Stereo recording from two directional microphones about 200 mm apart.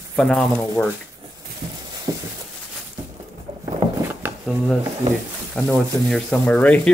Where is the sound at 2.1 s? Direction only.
20° right (ahead or behind).